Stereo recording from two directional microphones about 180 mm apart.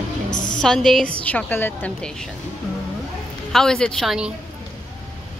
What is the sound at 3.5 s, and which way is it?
Speech, 5° left (ahead or behind).